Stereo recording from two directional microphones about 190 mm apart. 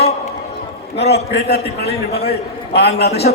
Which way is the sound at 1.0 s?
55° left (ahead or behind).